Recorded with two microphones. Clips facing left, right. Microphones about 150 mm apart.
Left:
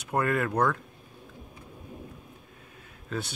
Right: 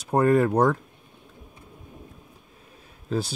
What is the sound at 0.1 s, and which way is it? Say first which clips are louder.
Speech: right 7 dB; 30° right (ahead or behind).